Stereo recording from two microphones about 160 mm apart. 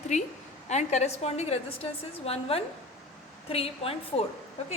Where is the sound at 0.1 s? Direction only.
50° left (ahead or behind).